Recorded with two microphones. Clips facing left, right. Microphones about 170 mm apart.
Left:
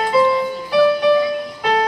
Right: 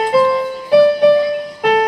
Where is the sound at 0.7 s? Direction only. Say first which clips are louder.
Right 5 dB; 40° right (ahead or behind).